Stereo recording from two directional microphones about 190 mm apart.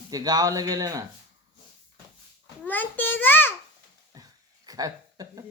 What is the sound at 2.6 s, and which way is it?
Speech, 10° left (ahead or behind).